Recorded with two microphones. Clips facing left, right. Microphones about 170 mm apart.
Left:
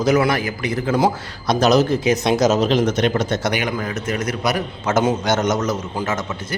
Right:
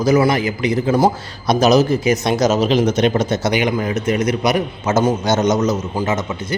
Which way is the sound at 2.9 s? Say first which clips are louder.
Right 3 dB; 20° right (ahead or behind).